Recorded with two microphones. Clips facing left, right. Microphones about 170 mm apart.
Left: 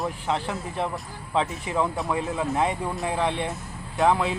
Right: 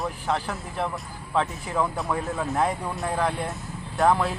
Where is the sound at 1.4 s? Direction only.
Centre (ahead or behind).